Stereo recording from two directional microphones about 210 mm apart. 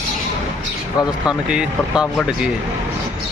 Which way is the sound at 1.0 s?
20° left (ahead or behind).